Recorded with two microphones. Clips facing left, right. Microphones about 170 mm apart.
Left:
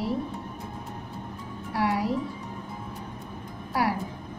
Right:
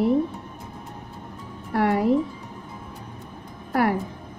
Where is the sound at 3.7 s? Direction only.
55° right (ahead or behind).